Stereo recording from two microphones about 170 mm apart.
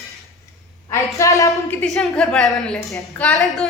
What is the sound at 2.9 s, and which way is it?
Speech, 15° left (ahead or behind).